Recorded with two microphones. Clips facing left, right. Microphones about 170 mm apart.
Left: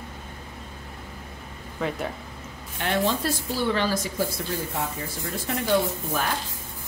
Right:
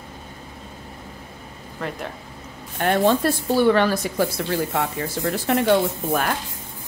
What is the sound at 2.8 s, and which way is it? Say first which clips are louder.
Speech: right 6 dB; 55° right (ahead or behind).